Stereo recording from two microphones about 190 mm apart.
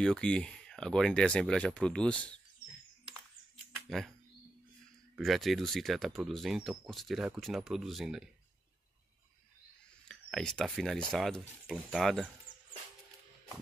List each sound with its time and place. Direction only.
0.0 s speech: 5° left (ahead or behind)
5.1 s speech: centre (ahead or behind)
10.0 s speech: 5° left (ahead or behind)
12.5 s a sound: 45° left (ahead or behind)